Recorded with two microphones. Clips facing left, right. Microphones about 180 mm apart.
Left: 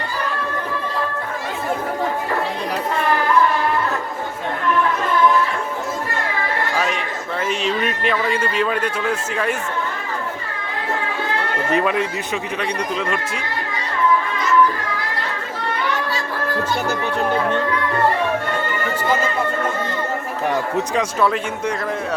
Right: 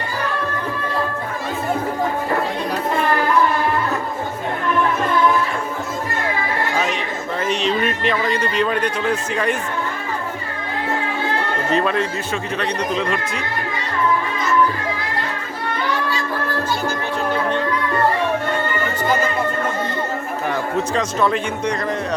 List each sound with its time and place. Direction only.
6.7 s speech: 5° left (ahead or behind)
11.7 s speech: 10° left (ahead or behind)
20.9 s speech: 10° left (ahead or behind)